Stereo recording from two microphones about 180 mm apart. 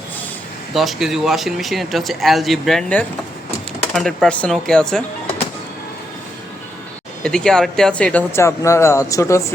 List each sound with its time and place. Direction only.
0.7 s speech: centre (ahead or behind)
7.2 s speech: 5° left (ahead or behind)